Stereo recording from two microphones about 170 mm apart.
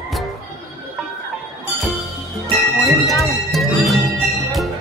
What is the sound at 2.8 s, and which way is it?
Speech, 20° left (ahead or behind).